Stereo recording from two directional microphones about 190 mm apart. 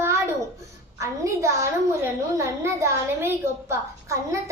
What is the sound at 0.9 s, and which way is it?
A woman's voice, 15° right (ahead or behind).